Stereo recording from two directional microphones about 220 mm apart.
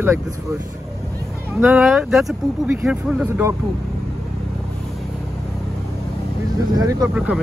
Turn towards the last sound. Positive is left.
turn(degrees=-5)  # may be behind; listen again after turning